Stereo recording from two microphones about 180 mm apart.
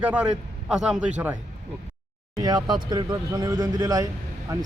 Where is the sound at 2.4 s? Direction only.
25° right (ahead or behind).